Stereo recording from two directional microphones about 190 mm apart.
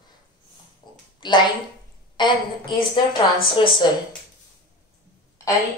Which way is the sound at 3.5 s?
25° left (ahead or behind).